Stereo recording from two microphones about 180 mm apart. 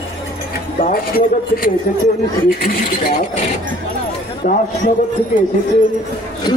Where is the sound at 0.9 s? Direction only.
55° left (ahead or behind).